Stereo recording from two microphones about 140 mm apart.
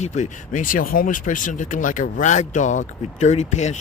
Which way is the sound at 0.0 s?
55° left (ahead or behind).